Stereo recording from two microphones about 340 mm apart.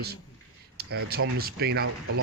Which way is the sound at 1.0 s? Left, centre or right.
Right.